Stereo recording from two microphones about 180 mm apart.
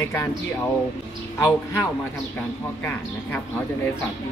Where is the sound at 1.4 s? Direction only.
15° left (ahead or behind).